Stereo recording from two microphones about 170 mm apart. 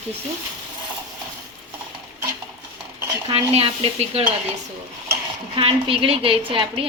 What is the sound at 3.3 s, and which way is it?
Speech, 35° right (ahead or behind).